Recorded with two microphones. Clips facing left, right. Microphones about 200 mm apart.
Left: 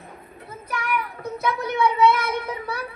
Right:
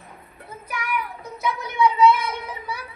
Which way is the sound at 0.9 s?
55° left (ahead or behind).